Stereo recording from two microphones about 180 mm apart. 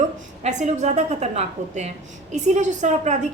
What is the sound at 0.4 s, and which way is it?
A woman's voice, 40° right (ahead or behind).